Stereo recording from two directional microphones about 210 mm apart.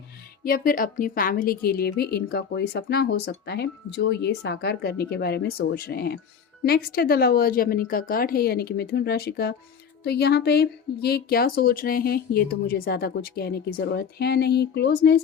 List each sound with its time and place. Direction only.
0.4 s a woman's voice: 45° left (ahead or behind)